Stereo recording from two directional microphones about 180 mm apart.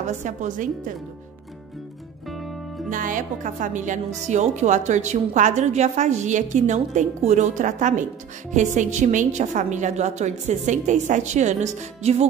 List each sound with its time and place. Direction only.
0.0 s a woman's voice: 45° right (ahead or behind)
2.9 s a woman's voice: 50° right (ahead or behind)